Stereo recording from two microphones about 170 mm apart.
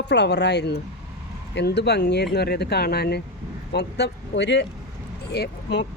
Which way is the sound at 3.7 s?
85° left.